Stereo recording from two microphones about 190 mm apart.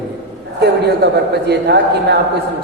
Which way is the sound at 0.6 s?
60° right (ahead or behind).